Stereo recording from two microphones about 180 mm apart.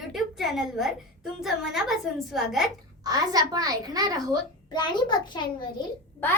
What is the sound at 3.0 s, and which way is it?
A child's voice, 20° right (ahead or behind).